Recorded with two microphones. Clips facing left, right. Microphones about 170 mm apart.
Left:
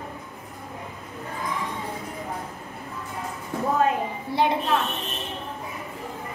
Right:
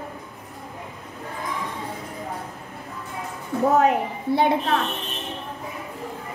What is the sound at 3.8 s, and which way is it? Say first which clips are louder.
Speech: right 3 dB; 70° right (ahead or behind).